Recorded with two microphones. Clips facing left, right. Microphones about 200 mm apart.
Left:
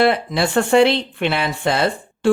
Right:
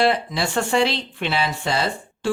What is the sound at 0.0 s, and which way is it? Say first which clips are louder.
Speech: left 4 dB; 60° left (ahead or behind).